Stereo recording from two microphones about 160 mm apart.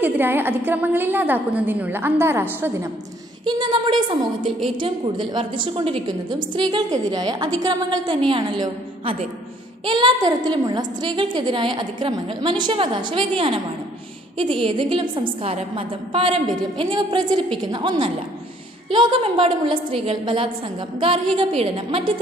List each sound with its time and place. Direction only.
0.0 s a woman's voice: 10° right (ahead or behind)
3.4 s a woman's voice: 25° right (ahead or behind)
14.6 s a woman's voice: 30° right (ahead or behind)